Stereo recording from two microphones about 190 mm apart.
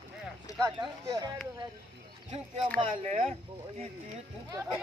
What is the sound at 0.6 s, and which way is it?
Speech, 20° right (ahead or behind).